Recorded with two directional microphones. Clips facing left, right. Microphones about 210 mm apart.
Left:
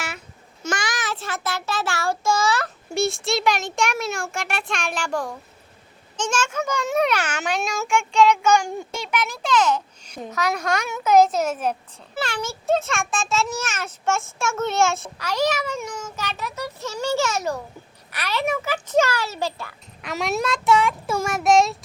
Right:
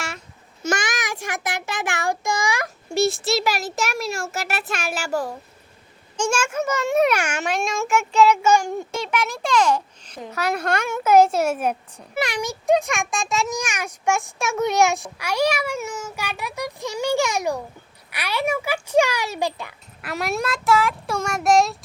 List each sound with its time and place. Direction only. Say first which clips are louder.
0.8 s child singing: right 1 dB; 20° right (ahead or behind)
2.9 s a child's voice: right 2 dB; centre (ahead or behind)
20.0 s a child's voice: left 1 dB; 5° right (ahead or behind)